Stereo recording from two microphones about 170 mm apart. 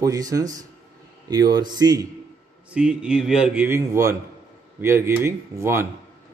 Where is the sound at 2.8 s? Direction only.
5° right (ahead or behind).